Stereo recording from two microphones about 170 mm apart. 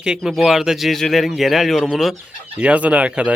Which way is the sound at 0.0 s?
5° right (ahead or behind).